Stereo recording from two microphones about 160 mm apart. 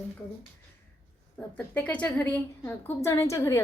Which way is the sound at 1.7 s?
10° left (ahead or behind).